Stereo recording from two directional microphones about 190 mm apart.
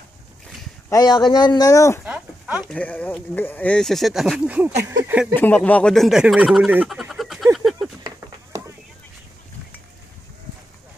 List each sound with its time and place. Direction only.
0.8 s speech: 20° left (ahead or behind)
2.0 s speech: 5° right (ahead or behind)
4.8 s speech: 15° right (ahead or behind)
5.3 s speech: 10° left (ahead or behind)
7.5 s a sound: centre (ahead or behind)